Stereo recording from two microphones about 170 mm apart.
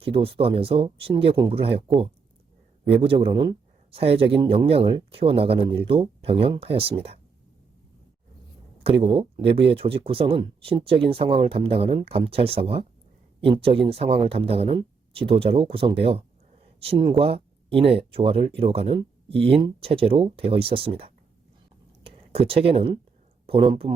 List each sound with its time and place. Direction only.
0.0 s speech: 35° right (ahead or behind)
2.9 s speech: 35° right (ahead or behind)
8.8 s speech: 35° right (ahead or behind)